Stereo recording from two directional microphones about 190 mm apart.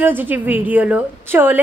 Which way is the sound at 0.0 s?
10° right (ahead or behind).